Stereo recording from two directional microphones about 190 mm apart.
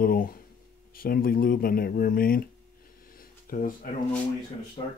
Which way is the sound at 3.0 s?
50° left (ahead or behind).